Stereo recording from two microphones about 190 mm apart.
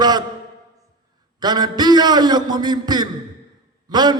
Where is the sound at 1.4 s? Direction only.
20° right (ahead or behind).